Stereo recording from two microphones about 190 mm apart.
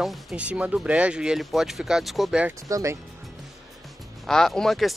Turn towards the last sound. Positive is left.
turn(degrees=0)  # may be behind; listen again after turning